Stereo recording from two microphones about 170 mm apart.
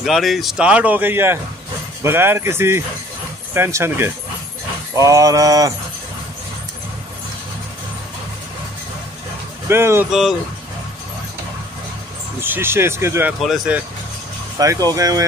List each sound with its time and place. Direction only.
0.0 s speech: centre (ahead or behind)
4.9 s a sound: 20° right (ahead or behind)
9.7 s speech: 15° right (ahead or behind)
12.4 s speech: 15° right (ahead or behind)
13.4 s speech: 5° right (ahead or behind)
14.6 s a sound: 20° right (ahead or behind)